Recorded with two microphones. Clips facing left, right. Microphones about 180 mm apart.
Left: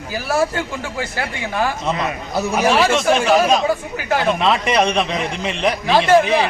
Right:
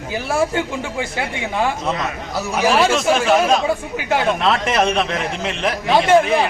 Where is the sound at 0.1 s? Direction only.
20° right (ahead or behind).